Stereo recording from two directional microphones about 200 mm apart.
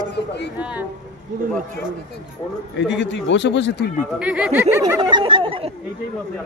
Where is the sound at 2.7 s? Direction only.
65° left (ahead or behind).